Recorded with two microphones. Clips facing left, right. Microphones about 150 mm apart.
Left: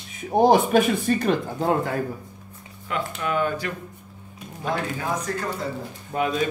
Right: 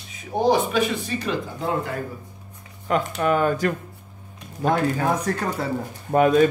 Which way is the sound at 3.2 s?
45° right (ahead or behind).